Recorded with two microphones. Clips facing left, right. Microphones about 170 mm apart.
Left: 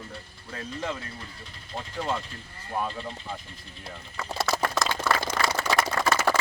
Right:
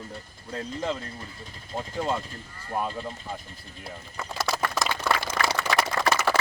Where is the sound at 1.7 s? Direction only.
10° right (ahead or behind).